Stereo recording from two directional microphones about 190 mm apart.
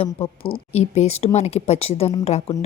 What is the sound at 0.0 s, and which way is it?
A woman's voice, 30° left (ahead or behind).